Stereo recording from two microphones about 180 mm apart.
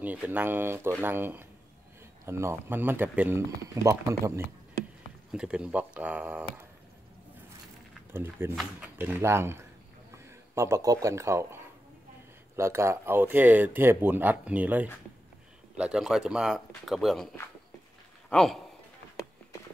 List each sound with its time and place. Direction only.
0.0 s speech: 10° right (ahead or behind)
5.3 s speech: 5° right (ahead or behind)
8.1 s speech: 15° right (ahead or behind)
18.3 s a man's voice: centre (ahead or behind)